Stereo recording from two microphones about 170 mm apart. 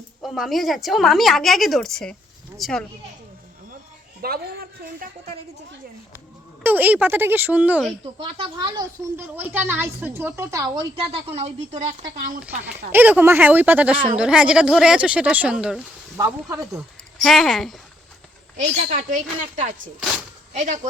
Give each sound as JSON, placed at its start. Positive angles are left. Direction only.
{"t": 0.2, "sound": "a woman's voice", "side_deg": 0}
{"t": 4.2, "sound": "a woman's voice", "side_deg": -60}
{"t": 6.6, "sound": "speech", "side_deg": -10}
{"t": 8.2, "sound": "speech", "side_deg": -30}
{"t": 9.1, "sound": "speech", "side_deg": -10}
{"t": 11.1, "sound": "speech", "side_deg": -35}
{"t": 12.9, "sound": "a woman's voice", "side_deg": -10}
{"t": 16.1, "sound": "speech", "side_deg": -20}
{"t": 16.7, "sound": "speech", "side_deg": 0}
{"t": 18.5, "sound": "a woman's voice", "side_deg": -45}